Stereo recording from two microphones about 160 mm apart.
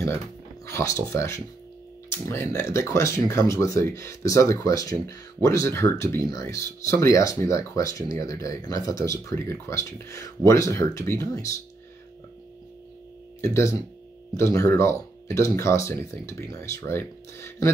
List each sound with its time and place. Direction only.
0.7 s speech: 15° left (ahead or behind)
13.4 s speech: 15° left (ahead or behind)